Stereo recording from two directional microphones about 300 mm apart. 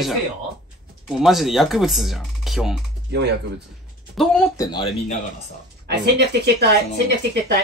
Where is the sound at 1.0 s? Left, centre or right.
Centre.